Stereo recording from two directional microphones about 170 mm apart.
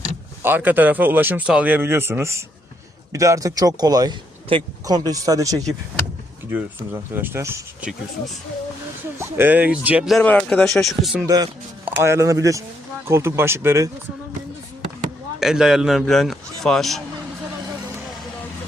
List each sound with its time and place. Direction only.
0.4 s speech: 10° right (ahead or behind)
9.1 s speech: 15° right (ahead or behind)
10.2 s speech: 5° left (ahead or behind)
11.9 s speech: 15° right (ahead or behind)
15.4 s speech: 5° right (ahead or behind)